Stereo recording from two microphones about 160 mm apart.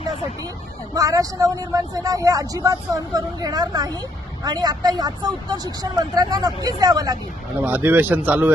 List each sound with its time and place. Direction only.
0.9 s speech: 20° right (ahead or behind)
7.6 s speech: 10° right (ahead or behind)